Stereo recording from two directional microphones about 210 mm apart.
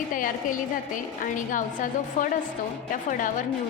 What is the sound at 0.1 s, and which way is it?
A woman's voice, 40° left (ahead or behind).